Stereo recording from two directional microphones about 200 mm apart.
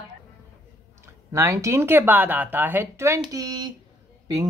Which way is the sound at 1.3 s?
15° right (ahead or behind).